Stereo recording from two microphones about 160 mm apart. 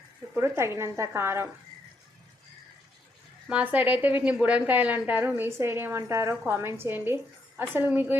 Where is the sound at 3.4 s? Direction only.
10° right (ahead or behind).